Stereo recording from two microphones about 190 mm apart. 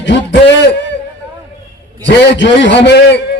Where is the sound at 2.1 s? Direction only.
65° left (ahead or behind).